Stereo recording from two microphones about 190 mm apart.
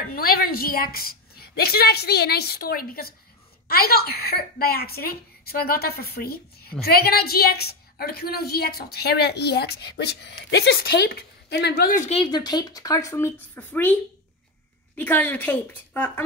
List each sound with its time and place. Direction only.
0.1 s a woman's voice: 50° left (ahead or behind)
11.9 s speech: 30° left (ahead or behind); by 13.9 s 10° left (ahead or behind)
15.0 s a woman's voice: 10° left (ahead or behind)